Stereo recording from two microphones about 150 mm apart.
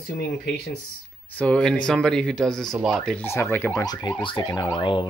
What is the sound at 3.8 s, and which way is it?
Speech, 25° left (ahead or behind).